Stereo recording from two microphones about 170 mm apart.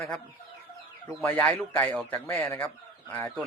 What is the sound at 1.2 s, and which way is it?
Speech, 10° left (ahead or behind).